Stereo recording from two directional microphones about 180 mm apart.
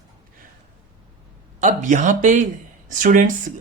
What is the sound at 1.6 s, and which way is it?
Speech, 45° right (ahead or behind).